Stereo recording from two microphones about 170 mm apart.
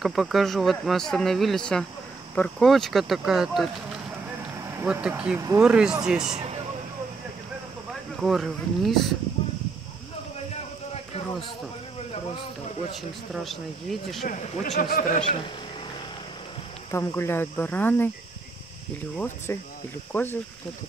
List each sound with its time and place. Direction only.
0.0 s speech: centre (ahead or behind)
4.6 s a sound: 20° right (ahead or behind)
4.8 s speech: 5° right (ahead or behind)
6.3 s a sound: 40° right (ahead or behind)
8.2 s speech: centre (ahead or behind)
10.5 s a sound: 40° left (ahead or behind)
12.9 s speech: centre (ahead or behind)
14.2 s a man's voice: 50° left (ahead or behind)
16.9 s cricket: 15° left (ahead or behind)
19.1 s cricket: 15° left (ahead or behind)